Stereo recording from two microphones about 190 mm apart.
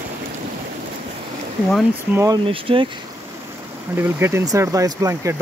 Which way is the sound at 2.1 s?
15° right (ahead or behind).